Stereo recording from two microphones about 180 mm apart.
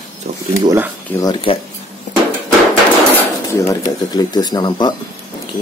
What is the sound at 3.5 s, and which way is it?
Speech, 15° left (ahead or behind).